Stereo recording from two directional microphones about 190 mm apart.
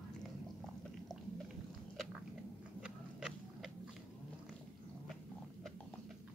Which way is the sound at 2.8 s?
5° right (ahead or behind).